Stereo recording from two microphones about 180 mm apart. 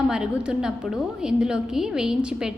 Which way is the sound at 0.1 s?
5° right (ahead or behind).